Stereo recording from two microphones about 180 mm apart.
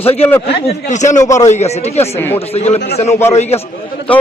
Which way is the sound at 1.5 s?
40° left (ahead or behind).